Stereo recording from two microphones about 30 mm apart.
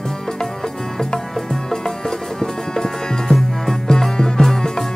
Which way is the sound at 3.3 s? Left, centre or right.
Centre.